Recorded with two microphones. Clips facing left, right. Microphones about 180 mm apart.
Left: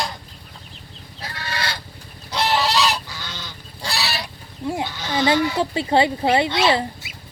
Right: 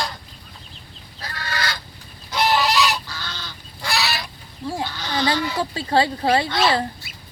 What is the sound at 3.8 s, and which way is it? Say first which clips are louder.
Goose: right 2 dB; 35° left (ahead or behind).